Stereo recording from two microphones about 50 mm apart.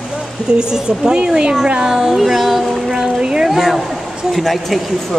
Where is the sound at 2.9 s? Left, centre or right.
Centre.